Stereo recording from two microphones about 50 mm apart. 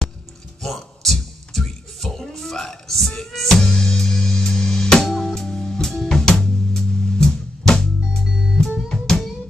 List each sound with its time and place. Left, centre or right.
0.6 s a sound: centre
5.0 s music: centre
8.3 s music: centre
8.8 s music: centre